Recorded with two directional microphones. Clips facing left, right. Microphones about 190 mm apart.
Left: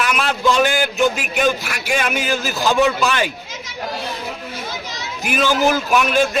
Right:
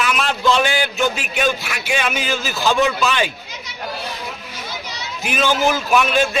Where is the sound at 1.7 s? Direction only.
50° left (ahead or behind).